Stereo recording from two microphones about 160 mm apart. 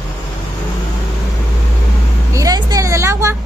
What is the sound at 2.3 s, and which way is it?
Vehicle, 20° right (ahead or behind).